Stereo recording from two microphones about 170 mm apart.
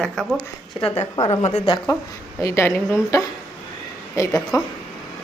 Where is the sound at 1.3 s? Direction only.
40° left (ahead or behind).